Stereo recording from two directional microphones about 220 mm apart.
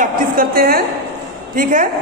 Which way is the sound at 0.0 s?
40° right (ahead or behind).